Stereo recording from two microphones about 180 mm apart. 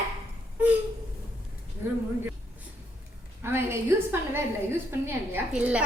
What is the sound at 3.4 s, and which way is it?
A woman's voice, 15° right (ahead or behind).